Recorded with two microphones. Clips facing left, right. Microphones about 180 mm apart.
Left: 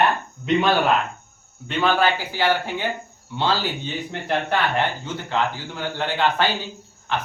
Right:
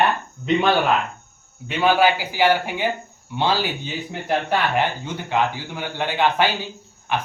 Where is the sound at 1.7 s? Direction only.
10° right (ahead or behind).